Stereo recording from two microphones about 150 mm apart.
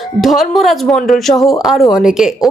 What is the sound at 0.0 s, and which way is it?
A woman's voice, centre (ahead or behind).